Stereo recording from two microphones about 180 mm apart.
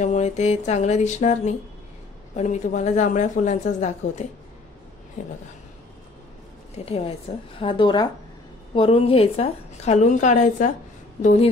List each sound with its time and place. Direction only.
0.0 s a woman's voice: 40° left (ahead or behind)
6.9 s a woman's voice: 30° left (ahead or behind)